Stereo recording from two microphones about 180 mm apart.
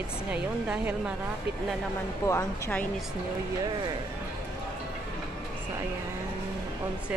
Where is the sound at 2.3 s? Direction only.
10° left (ahead or behind).